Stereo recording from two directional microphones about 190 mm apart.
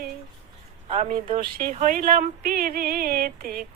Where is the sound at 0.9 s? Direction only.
35° right (ahead or behind).